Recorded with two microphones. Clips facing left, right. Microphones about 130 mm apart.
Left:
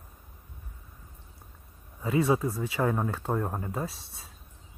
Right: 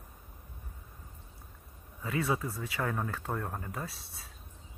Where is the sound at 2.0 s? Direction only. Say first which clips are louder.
Left 7 dB; 20° left (ahead or behind).